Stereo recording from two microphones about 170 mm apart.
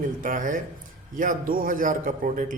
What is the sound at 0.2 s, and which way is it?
Speech, 50° right (ahead or behind).